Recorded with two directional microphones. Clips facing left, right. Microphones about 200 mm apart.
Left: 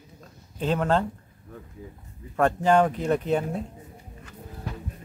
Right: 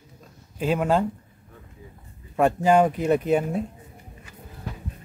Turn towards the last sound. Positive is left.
turn(degrees=-10)  # may be behind; listen again after turning